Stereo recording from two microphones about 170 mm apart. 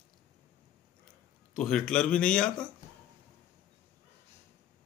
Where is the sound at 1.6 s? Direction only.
5° left (ahead or behind).